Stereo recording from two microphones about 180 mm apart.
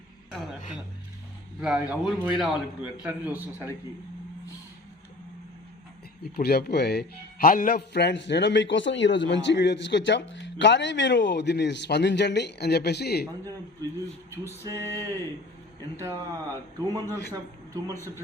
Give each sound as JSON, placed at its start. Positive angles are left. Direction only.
{"t": 0.3, "sound": "a sound", "side_deg": 0}
{"t": 1.6, "sound": "a man's voice", "side_deg": -5}
{"t": 6.3, "sound": "speech", "side_deg": 60}
{"t": 14.4, "sound": "a man's voice", "side_deg": -15}